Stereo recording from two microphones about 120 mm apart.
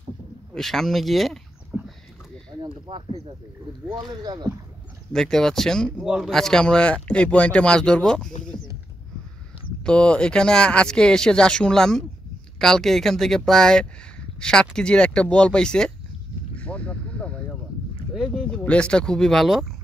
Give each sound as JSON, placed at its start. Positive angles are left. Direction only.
{"t": 0.6, "sound": "speech", "side_deg": 5}
{"t": 2.7, "sound": "speech", "side_deg": -50}
{"t": 3.9, "sound": "speech", "side_deg": -35}
{"t": 5.1, "sound": "speech", "side_deg": 5}
{"t": 9.8, "sound": "speech", "side_deg": 10}
{"t": 16.5, "sound": "a sound", "side_deg": 10}
{"t": 18.1, "sound": "boat", "side_deg": 0}
{"t": 18.6, "sound": "speech", "side_deg": 10}